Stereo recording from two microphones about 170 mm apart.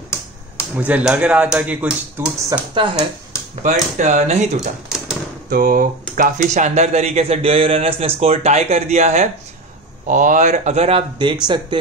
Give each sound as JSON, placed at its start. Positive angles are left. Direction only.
{"t": 0.6, "sound": "speech", "side_deg": -10}
{"t": 2.7, "sound": "speech", "side_deg": -30}
{"t": 3.6, "sound": "speech", "side_deg": -45}
{"t": 4.8, "sound": "typewriter", "side_deg": -5}
{"t": 5.5, "sound": "speech", "side_deg": -60}